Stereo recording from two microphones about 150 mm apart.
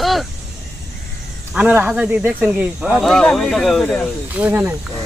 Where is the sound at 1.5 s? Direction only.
10° right (ahead or behind).